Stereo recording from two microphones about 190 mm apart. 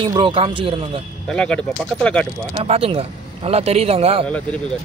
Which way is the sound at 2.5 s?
30° right (ahead or behind).